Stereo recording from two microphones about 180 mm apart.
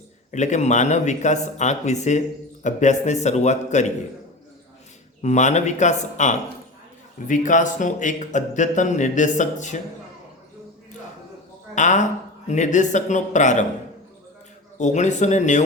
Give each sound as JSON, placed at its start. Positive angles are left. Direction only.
{"t": 0.3, "sound": "speech", "side_deg": 40}
{"t": 5.2, "sound": "a man's voice", "side_deg": 40}
{"t": 11.7, "sound": "a woman's voice", "side_deg": 45}
{"t": 14.8, "sound": "speech", "side_deg": 40}